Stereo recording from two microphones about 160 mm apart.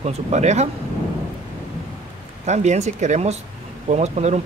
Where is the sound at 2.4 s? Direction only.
45° right (ahead or behind).